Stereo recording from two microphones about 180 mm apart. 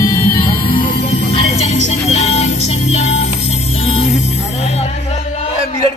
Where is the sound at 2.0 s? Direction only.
35° left (ahead or behind).